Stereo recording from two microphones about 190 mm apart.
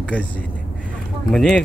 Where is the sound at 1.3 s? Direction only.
5° left (ahead or behind).